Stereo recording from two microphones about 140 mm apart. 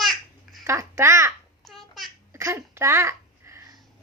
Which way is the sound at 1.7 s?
Centre (ahead or behind).